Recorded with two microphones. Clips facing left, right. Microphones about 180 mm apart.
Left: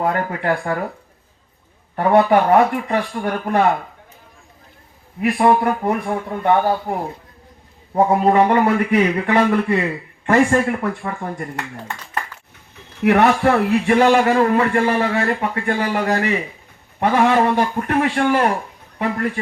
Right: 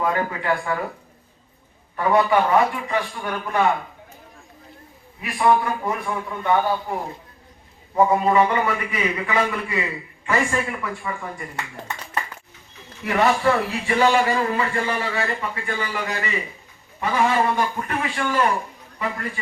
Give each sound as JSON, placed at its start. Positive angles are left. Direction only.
{"t": 0.0, "sound": "a man's voice", "side_deg": 60}
{"t": 2.0, "sound": "a man's voice", "side_deg": 60}
{"t": 5.2, "sound": "a man's voice", "side_deg": 55}
{"t": 7.9, "sound": "a man's voice", "side_deg": 55}
{"t": 13.0, "sound": "a man's voice", "side_deg": 60}